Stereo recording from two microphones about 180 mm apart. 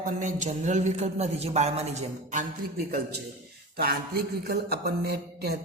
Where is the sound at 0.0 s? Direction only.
45° right (ahead or behind).